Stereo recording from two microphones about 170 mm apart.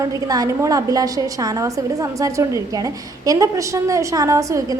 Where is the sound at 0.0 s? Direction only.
20° right (ahead or behind).